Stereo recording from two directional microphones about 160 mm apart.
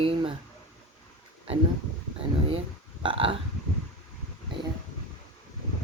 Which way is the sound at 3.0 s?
30° right (ahead or behind).